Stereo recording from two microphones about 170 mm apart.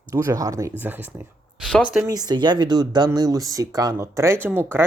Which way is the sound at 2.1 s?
20° right (ahead or behind).